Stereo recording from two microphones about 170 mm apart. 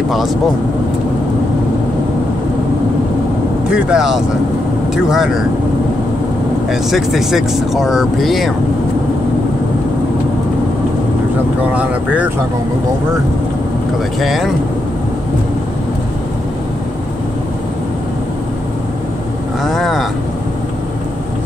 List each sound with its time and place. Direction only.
0.1 s speech: centre (ahead or behind)
3.7 s speech: 5° right (ahead or behind)
6.7 s speech: centre (ahead or behind)
11.7 s speech: 10° right (ahead or behind)
14.2 s speech: centre (ahead or behind)
19.6 s speech: centre (ahead or behind)